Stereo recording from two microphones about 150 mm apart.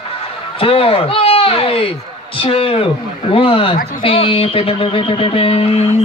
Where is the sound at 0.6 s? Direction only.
40° left (ahead or behind).